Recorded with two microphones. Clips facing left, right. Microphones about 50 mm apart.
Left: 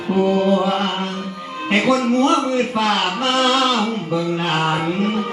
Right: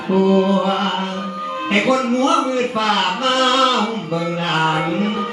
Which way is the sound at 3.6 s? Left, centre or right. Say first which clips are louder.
Right 2 dB; centre.